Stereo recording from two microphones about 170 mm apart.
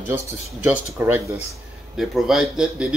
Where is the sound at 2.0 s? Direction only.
Centre (ahead or behind).